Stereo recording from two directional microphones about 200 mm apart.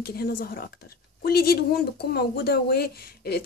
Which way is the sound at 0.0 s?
50° left (ahead or behind).